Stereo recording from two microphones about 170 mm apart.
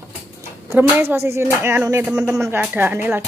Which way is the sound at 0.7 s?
10° right (ahead or behind).